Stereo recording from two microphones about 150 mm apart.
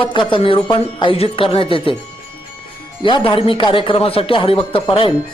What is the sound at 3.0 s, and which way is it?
Speech, 30° left (ahead or behind).